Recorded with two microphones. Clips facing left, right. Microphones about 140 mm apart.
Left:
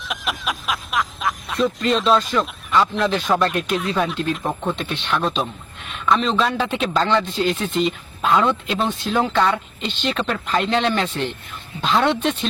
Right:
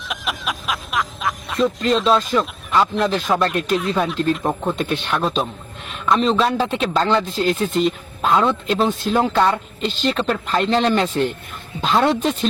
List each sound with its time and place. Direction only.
0.1 s speech: centre (ahead or behind)
4.8 s speech: 50° right (ahead or behind)
5.1 s speech: centre (ahead or behind)
11.0 s speech: 45° right (ahead or behind)
11.8 s speech: centre (ahead or behind)